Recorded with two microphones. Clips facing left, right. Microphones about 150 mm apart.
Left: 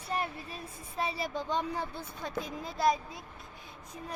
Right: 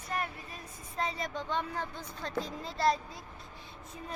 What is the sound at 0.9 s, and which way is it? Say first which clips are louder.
A woman's voice: left 1 dB; 10° left (ahead or behind).